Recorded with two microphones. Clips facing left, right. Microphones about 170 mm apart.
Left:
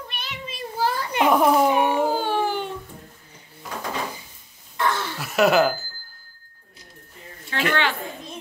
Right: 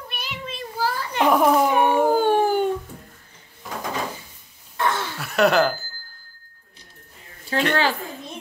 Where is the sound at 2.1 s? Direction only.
50° right (ahead or behind).